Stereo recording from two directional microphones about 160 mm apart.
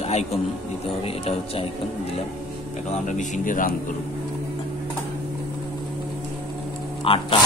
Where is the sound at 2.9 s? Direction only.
50° left (ahead or behind).